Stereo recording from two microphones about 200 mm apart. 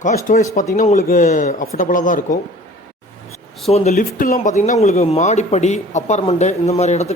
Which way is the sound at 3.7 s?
30° left (ahead or behind).